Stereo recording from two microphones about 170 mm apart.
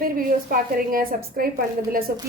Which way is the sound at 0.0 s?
55° right (ahead or behind).